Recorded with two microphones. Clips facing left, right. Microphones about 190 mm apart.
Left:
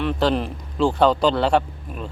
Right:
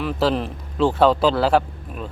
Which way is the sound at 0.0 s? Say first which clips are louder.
Even; centre (ahead or behind).